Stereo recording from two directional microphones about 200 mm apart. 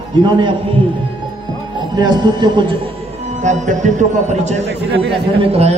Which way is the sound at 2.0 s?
20° right (ahead or behind).